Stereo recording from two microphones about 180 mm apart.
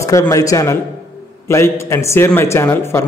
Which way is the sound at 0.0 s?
15° left (ahead or behind).